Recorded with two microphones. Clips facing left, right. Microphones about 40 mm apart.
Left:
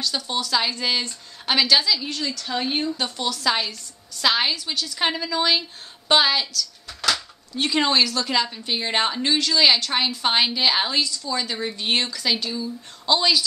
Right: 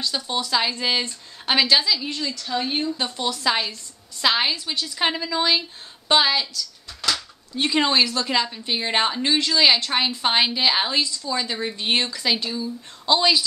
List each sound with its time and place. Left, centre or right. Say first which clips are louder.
0.1 s a woman's voice: even; centre
0.5 s a woman's voice: right 1 dB; centre
2.4 s speech: even; centre
3.0 s a woman's voice: even; centre
3.4 s a woman's voice: even; centre
7.5 s a woman's voice: even; centre
12.4 s a woman's voice: right 1 dB; centre